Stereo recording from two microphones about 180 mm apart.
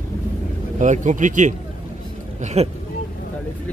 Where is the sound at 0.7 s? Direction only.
45° right (ahead or behind).